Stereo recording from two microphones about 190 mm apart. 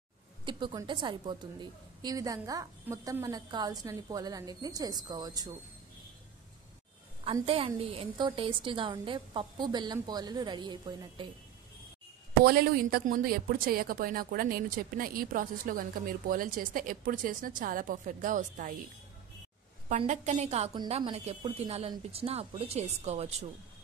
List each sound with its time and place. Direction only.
0.5 s a woman's voice: 25° right (ahead or behind)
7.4 s a woman's voice: 30° right (ahead or behind)
12.4 s a woman's voice: 55° right (ahead or behind)
20.1 s speech: 35° right (ahead or behind)